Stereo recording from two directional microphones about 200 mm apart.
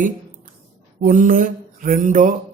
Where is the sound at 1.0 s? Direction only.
45° right (ahead or behind).